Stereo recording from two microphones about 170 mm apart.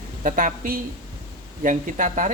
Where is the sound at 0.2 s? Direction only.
50° right (ahead or behind).